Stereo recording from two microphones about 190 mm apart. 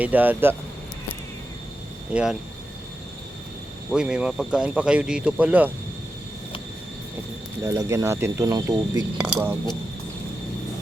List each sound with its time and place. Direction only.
0.0 s speech: 10° right (ahead or behind)
2.1 s speech: 5° right (ahead or behind)
3.9 s speech: 5° right (ahead or behind)
7.6 s speech: 20° right (ahead or behind)
9.1 s speech: 10° right (ahead or behind)